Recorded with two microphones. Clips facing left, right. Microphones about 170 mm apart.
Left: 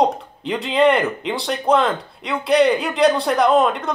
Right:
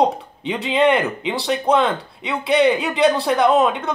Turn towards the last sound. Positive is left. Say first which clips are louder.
# even
turn(degrees=0)  # may be behind; listen again after turning